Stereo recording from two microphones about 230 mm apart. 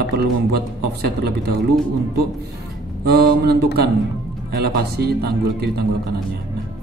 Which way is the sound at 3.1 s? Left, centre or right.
Right.